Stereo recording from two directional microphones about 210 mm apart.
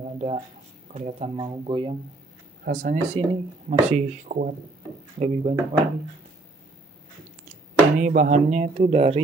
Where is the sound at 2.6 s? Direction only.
40° right (ahead or behind).